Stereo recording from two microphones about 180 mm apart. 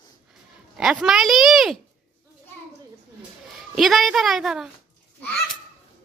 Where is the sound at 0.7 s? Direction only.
5° right (ahead or behind).